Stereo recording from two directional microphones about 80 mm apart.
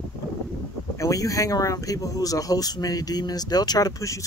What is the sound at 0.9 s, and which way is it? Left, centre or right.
Speech, left.